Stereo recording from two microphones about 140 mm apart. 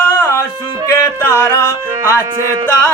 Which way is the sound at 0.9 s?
20° left (ahead or behind).